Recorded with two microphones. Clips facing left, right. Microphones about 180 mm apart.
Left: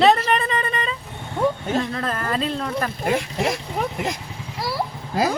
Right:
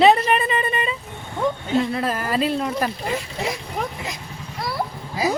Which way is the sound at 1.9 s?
10° right (ahead or behind).